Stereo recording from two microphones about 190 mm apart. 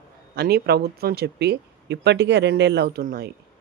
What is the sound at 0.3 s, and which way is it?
Speech, 55° right (ahead or behind).